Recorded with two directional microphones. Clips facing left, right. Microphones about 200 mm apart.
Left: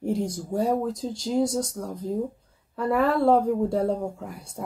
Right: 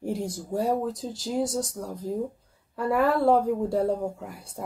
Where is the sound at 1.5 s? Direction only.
25° left (ahead or behind).